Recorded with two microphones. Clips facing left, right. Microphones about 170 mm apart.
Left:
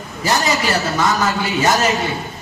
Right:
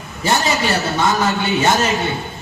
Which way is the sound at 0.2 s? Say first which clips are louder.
Even; 25° right (ahead or behind).